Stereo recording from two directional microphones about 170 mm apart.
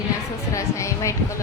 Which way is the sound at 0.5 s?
20° left (ahead or behind).